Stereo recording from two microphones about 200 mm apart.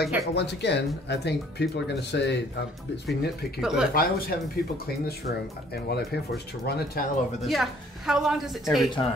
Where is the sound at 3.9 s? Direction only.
50° left (ahead or behind).